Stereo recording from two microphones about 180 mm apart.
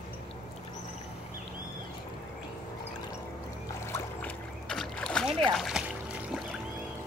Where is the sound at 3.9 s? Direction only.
5° left (ahead or behind).